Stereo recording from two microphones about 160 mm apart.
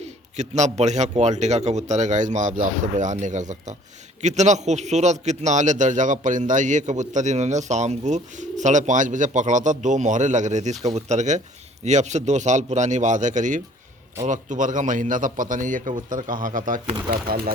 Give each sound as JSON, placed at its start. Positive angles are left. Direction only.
{"t": 0.0, "sound": "a man's voice", "side_deg": -45}